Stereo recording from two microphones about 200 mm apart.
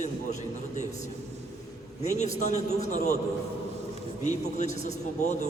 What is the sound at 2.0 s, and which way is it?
A man's voice, 35° left (ahead or behind).